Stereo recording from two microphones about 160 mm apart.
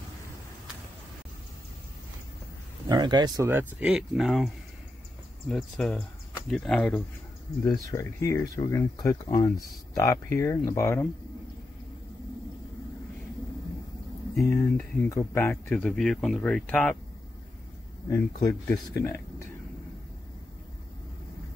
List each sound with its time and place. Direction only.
2.9 s speech: 25° right (ahead or behind)
3.4 s speech: 10° right (ahead or behind)
5.5 s speech: 5° left (ahead or behind)
7.6 s speech: 20° left (ahead or behind)
14.3 s speech: centre (ahead or behind)
15.0 s speech: 15° left (ahead or behind)
18.1 s speech: 20° left (ahead or behind)